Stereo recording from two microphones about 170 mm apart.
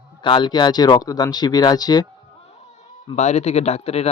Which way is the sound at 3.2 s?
40° left (ahead or behind).